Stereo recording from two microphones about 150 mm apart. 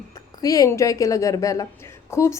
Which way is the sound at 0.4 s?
25° left (ahead or behind).